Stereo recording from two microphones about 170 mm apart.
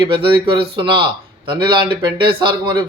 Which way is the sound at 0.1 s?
30° right (ahead or behind).